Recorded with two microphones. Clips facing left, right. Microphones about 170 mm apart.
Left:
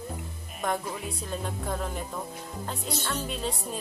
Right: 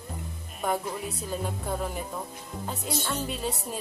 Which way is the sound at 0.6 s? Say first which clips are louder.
Right 1 dB; 5° right (ahead or behind).